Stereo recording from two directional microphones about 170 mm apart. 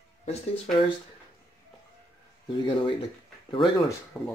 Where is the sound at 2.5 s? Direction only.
30° left (ahead or behind).